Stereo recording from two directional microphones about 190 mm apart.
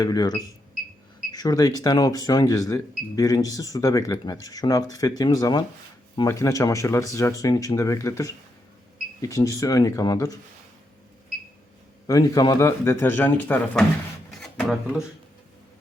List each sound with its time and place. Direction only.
0.0 s speech: 20° left (ahead or behind)
12.0 s speech: 20° left (ahead or behind); by 15.0 s centre (ahead or behind)